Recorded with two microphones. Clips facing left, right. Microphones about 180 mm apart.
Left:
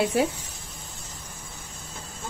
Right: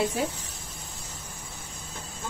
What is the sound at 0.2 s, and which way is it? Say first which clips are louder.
Speech: left 6 dB; 75° left (ahead or behind).